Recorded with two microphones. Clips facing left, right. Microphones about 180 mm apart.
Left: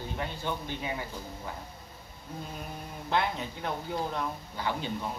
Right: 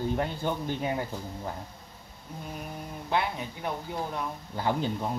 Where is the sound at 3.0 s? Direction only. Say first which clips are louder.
Even; 10° right (ahead or behind).